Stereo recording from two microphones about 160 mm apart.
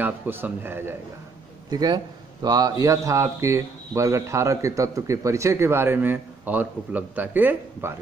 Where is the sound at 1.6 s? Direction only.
25° right (ahead or behind).